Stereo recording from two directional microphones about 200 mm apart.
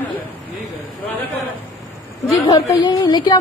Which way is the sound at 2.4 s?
15° left (ahead or behind).